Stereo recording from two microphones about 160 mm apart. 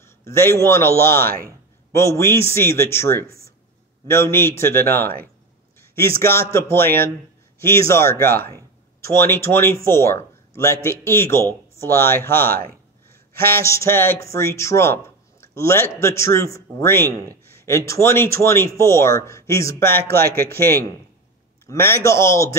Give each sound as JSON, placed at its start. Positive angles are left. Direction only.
{"t": 0.0, "sound": "a man's voice", "side_deg": 15}
{"t": 1.1, "sound": "speech", "side_deg": -65}
{"t": 1.9, "sound": "speech", "side_deg": 20}
{"t": 5.8, "sound": "a sound", "side_deg": 15}
{"t": 6.2, "sound": "speech", "side_deg": 15}
{"t": 12.4, "sound": "speech", "side_deg": -65}
{"t": 13.5, "sound": "speech", "side_deg": 15}
{"t": 20.1, "sound": "speech", "side_deg": -70}
{"t": 20.3, "sound": "speech", "side_deg": 15}